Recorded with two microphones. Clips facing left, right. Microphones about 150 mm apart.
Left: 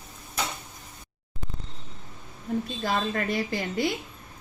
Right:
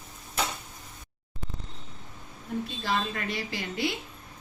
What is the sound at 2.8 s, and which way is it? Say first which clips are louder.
A woman's voice: left 3 dB; 45° left (ahead or behind).